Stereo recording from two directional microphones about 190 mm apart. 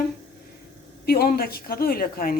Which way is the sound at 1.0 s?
55° left (ahead or behind).